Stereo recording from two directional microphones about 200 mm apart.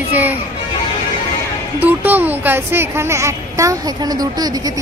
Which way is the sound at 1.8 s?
10° right (ahead or behind).